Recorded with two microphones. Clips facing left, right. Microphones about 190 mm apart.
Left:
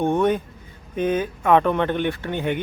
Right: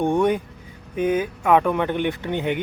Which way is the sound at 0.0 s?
15° right (ahead or behind).